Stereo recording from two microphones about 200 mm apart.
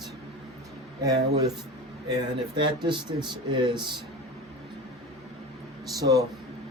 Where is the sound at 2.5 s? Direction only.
25° right (ahead or behind).